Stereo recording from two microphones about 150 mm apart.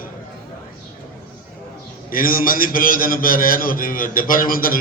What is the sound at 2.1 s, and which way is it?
A man's voice, 70° left (ahead or behind).